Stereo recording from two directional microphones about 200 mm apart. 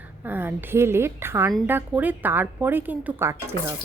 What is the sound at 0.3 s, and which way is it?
A woman's voice, 10° right (ahead or behind).